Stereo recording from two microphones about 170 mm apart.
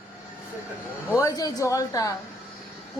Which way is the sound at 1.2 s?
20° left (ahead or behind).